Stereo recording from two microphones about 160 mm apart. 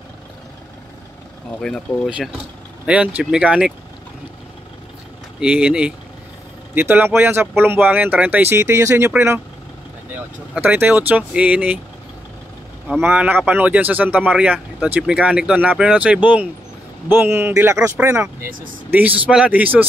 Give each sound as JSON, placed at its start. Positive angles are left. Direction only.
{"t": 1.6, "sound": "speech", "side_deg": 5}
{"t": 2.0, "sound": "speech", "side_deg": -5}
{"t": 5.4, "sound": "speech", "side_deg": -5}
{"t": 10.5, "sound": "speech", "side_deg": -10}
{"t": 13.0, "sound": "speech", "side_deg": -10}